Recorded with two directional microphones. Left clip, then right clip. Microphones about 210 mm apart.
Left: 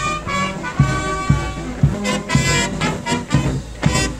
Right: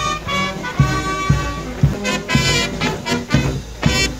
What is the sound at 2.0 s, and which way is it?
Music, 25° right (ahead or behind).